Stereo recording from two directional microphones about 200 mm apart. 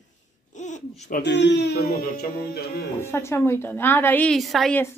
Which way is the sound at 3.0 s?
10° left (ahead or behind).